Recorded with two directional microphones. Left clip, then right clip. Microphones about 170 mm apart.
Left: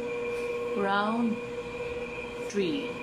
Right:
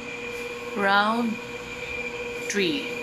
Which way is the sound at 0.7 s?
10° right (ahead or behind).